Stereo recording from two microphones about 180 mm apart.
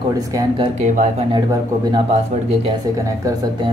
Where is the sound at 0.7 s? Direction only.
40° right (ahead or behind).